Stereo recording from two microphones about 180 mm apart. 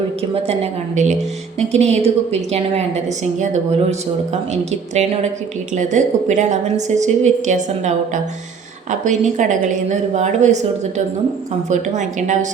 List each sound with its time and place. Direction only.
0.2 s a woman's voice: 35° right (ahead or behind)